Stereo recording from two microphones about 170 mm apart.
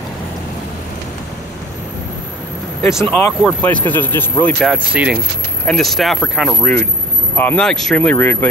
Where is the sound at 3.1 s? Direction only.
10° left (ahead or behind).